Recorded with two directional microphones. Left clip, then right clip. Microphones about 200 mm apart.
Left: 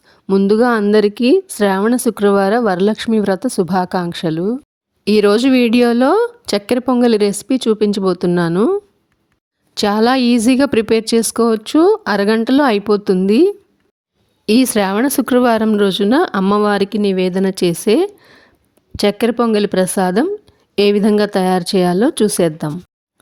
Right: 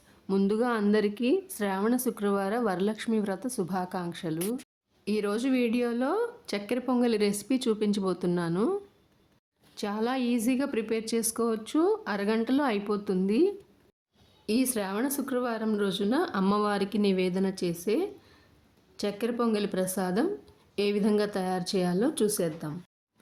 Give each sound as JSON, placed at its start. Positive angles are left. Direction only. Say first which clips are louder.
{"t": 0.3, "sound": "speech", "louder": "left 15 dB", "side_deg": 40}
{"t": 9.7, "sound": "a woman's voice", "louder": "left 17 dB", "side_deg": 50}